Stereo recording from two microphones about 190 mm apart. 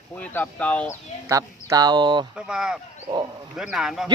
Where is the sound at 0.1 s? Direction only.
10° left (ahead or behind).